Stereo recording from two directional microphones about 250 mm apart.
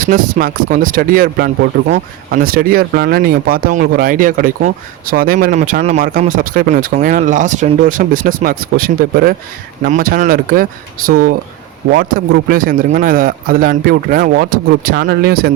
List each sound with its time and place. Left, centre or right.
0.0 s speech: right